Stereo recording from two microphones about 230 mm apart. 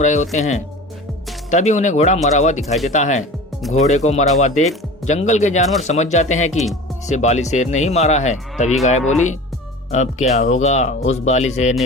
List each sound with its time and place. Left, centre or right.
0.0 s speech: left